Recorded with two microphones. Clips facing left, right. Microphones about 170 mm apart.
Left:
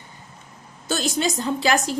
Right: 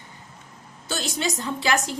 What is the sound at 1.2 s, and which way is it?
Speech, 35° left (ahead or behind).